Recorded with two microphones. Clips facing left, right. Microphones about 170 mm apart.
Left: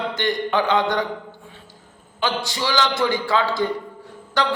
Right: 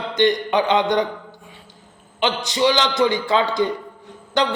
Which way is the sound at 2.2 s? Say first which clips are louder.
Right 5 dB; 20° right (ahead or behind).